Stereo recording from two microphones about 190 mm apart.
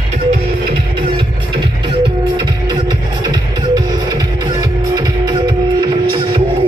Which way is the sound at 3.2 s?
20° right (ahead or behind).